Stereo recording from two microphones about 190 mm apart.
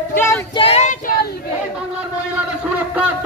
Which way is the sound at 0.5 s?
30° left (ahead or behind).